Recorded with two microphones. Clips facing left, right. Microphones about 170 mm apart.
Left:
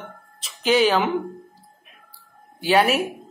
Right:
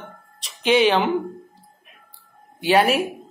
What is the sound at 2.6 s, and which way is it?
Speech, centre (ahead or behind).